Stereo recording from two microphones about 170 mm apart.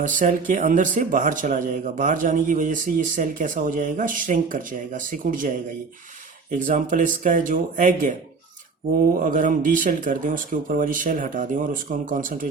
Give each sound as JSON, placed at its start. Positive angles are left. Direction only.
{"t": 0.0, "sound": "a man's voice", "side_deg": -50}
{"t": 6.7, "sound": "a man's voice", "side_deg": -50}
{"t": 9.1, "sound": "a man's voice", "side_deg": -50}